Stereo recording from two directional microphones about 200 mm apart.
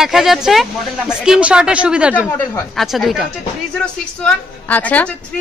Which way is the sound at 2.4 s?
10° left (ahead or behind).